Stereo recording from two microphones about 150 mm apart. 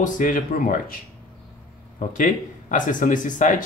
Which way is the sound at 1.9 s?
60° left (ahead or behind).